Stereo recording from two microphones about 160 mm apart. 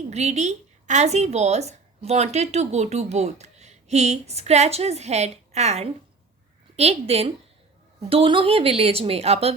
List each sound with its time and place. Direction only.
0.1 s a woman's voice: 45° right (ahead or behind)